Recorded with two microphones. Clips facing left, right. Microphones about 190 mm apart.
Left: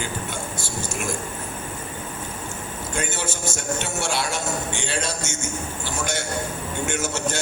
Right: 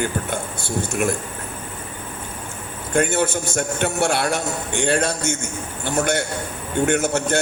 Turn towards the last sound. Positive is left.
turn(degrees=-60)  # may be behind; listen again after turning